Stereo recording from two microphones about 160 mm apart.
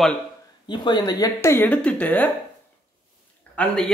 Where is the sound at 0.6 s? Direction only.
30° left (ahead or behind); by 2.3 s 10° left (ahead or behind).